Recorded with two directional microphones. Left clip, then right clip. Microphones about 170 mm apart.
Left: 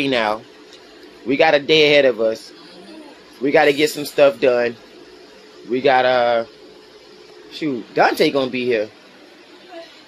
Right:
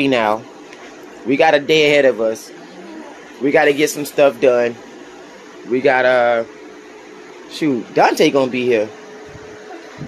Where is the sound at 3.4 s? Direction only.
Centre (ahead or behind).